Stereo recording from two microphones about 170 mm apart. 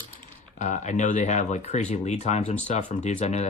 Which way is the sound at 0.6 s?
45° left (ahead or behind).